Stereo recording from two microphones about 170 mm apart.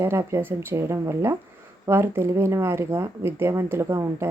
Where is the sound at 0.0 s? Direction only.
15° right (ahead or behind).